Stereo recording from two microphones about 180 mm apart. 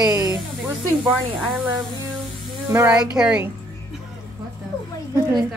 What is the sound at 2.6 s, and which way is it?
Speech, 10° right (ahead or behind).